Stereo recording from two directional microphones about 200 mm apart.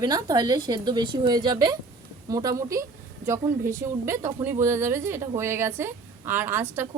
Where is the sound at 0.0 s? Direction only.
20° right (ahead or behind).